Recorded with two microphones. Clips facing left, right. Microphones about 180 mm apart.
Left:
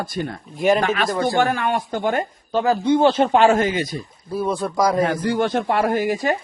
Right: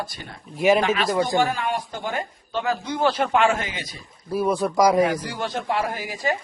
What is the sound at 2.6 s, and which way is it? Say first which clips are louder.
Speech: left 7 dB; 30° left (ahead or behind).